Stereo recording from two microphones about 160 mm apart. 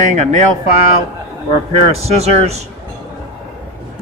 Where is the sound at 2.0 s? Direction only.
40° right (ahead or behind).